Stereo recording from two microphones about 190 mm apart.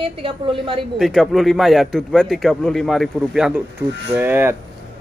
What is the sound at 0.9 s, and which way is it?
A man's voice, centre (ahead or behind).